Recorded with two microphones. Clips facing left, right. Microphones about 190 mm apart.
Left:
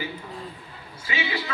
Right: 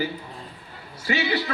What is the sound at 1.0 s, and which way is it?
Speech, 40° right (ahead or behind).